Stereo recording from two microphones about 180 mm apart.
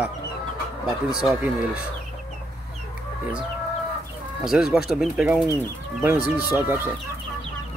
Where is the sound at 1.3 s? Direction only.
5° right (ahead or behind).